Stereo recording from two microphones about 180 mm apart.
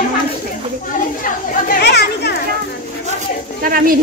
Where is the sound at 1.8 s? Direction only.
70° left (ahead or behind).